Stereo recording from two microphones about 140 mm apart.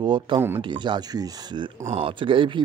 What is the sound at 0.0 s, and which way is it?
Speech, 35° right (ahead or behind).